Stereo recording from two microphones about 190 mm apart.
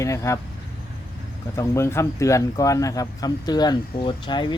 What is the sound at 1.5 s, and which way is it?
Speech, 15° left (ahead or behind).